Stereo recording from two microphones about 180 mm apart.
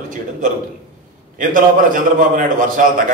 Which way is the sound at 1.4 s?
50° right (ahead or behind).